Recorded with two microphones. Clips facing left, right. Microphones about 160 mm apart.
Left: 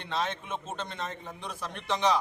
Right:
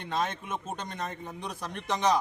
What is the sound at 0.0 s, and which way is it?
A man's voice, 45° right (ahead or behind).